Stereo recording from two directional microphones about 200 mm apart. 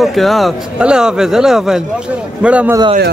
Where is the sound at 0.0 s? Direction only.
Centre (ahead or behind).